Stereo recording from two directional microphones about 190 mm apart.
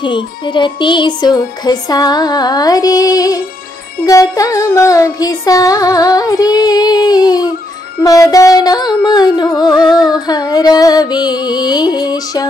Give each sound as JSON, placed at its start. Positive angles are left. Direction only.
{"t": 0.0, "sound": "music", "side_deg": 25}